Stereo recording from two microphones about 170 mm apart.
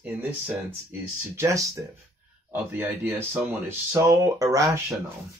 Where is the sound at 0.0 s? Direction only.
10° right (ahead or behind).